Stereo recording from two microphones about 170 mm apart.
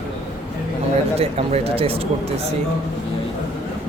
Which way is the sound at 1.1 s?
35° right (ahead or behind).